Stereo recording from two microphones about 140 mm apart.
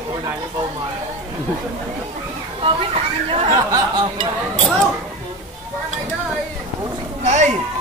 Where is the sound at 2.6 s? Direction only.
40° right (ahead or behind).